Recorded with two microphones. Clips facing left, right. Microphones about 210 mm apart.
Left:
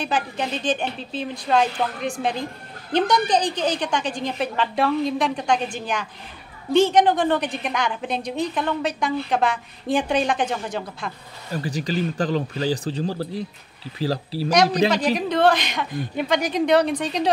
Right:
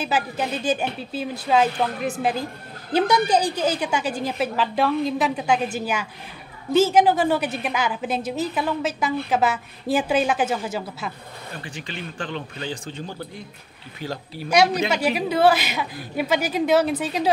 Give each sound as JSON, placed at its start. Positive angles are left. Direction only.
{"t": 0.0, "sound": "a woman's voice", "side_deg": -5}
{"t": 11.5, "sound": "speech", "side_deg": 40}
{"t": 14.9, "sound": "a woman's voice", "side_deg": -10}